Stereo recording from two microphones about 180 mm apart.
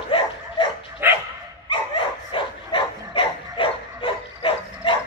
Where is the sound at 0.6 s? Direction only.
30° left (ahead or behind).